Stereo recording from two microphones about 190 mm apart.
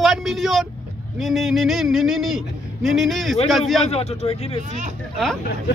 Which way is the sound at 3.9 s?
35° left (ahead or behind).